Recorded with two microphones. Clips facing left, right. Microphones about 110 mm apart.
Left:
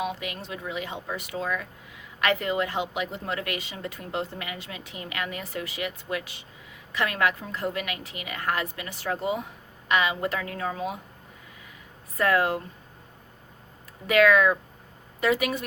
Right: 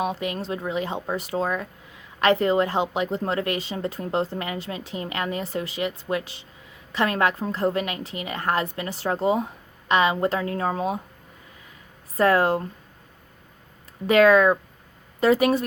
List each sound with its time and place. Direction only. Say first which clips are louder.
0.0 s a woman's voice: right 5 dB; 35° right (ahead or behind)
12.1 s a woman's voice: right 4 dB; 35° right (ahead or behind)
14.1 s a woman's voice: right 4 dB; 30° right (ahead or behind)